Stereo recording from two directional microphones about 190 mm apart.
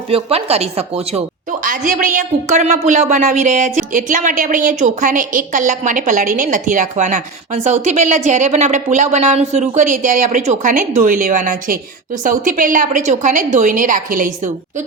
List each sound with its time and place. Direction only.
0.1 s a woman's voice: 30° right (ahead or behind)
1.6 s a woman's voice: 45° right (ahead or behind)